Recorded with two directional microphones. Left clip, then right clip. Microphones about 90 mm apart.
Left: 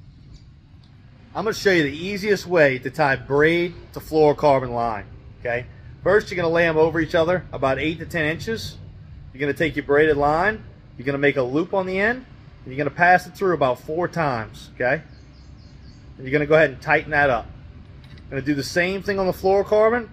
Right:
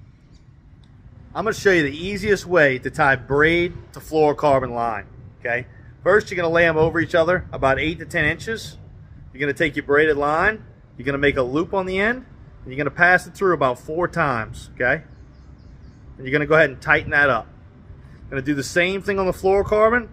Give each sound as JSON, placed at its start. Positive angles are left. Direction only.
{"t": 1.3, "sound": "speech", "side_deg": -45}
{"t": 16.3, "sound": "speech", "side_deg": -50}